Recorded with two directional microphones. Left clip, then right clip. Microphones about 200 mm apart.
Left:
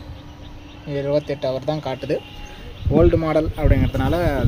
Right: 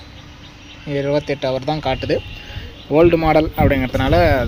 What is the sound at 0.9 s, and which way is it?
Speech, 40° right (ahead or behind).